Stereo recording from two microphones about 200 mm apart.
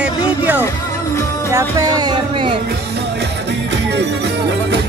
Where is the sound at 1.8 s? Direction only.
20° right (ahead or behind).